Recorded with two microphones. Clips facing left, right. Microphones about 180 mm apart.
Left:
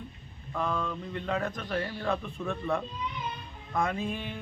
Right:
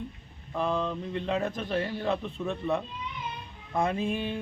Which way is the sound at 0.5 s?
25° right (ahead or behind).